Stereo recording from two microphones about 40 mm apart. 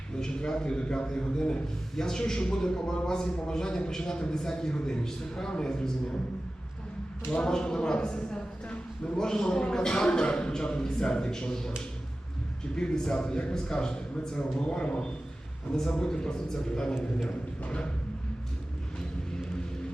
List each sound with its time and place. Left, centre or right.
0.3 s a man's voice: left
7.3 s a man's voice: left
12.7 s a man's voice: centre